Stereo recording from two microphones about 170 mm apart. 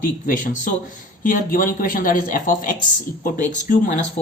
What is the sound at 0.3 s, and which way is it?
Speech, 55° left (ahead or behind).